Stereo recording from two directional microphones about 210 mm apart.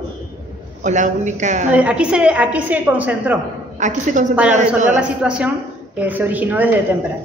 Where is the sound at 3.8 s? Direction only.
35° right (ahead or behind).